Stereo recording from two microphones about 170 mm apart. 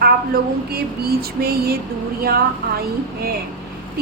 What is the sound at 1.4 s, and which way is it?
Speech, 65° right (ahead or behind).